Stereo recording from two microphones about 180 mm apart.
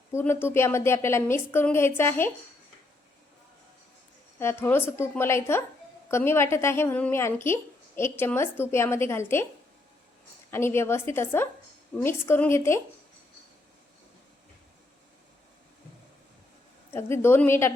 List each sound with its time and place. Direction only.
0.1 s a woman's voice: 15° left (ahead or behind)
4.4 s a woman's voice: 15° left (ahead or behind)
10.5 s a woman's voice: 15° left (ahead or behind)
16.9 s a woman's voice: 15° left (ahead or behind)